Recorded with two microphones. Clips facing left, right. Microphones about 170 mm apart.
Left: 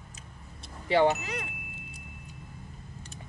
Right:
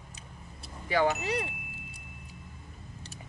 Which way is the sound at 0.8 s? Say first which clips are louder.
Left 4 dB; 25° left (ahead or behind).